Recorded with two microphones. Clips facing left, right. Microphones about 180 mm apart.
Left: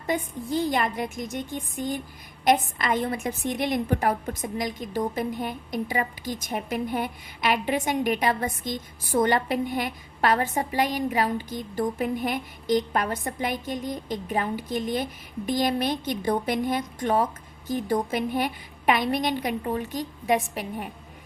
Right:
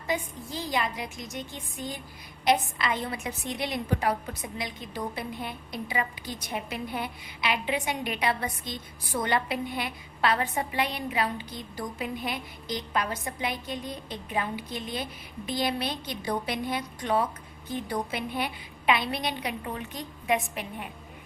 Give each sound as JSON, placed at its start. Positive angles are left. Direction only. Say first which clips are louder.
{"t": 0.1, "sound": "a woman's voice", "louder": "left 5 dB", "side_deg": 55}